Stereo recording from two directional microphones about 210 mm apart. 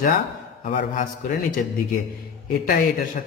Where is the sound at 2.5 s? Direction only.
45° left (ahead or behind).